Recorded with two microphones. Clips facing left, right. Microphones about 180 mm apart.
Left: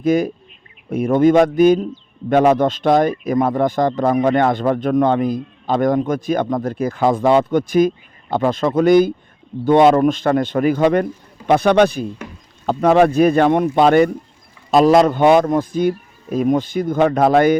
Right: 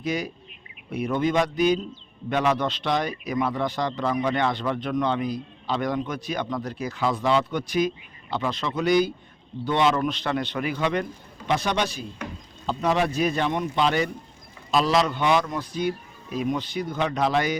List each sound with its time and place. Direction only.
0.0 s a man's voice: 50° left (ahead or behind)